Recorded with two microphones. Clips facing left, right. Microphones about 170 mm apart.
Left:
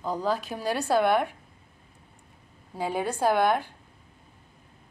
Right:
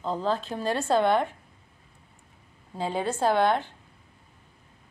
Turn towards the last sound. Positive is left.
turn(degrees=10)  # may be behind; listen again after turning